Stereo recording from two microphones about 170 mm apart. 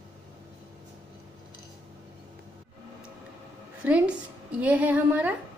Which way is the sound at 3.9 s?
5° right (ahead or behind).